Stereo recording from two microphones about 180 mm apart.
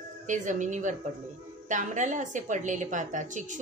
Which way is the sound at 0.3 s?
45° right (ahead or behind).